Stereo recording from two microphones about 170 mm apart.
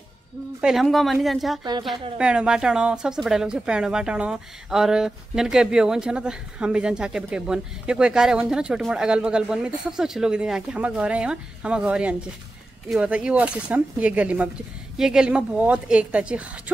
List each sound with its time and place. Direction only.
0.6 s speech: centre (ahead or behind)
1.6 s a woman's voice: 25° right (ahead or behind)
2.1 s a woman's voice: 5° right (ahead or behind)